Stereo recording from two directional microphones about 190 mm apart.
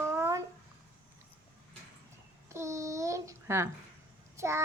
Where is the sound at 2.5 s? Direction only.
15° right (ahead or behind).